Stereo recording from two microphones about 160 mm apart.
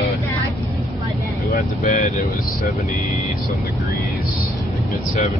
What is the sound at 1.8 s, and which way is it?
Vehicle, 50° left (ahead or behind).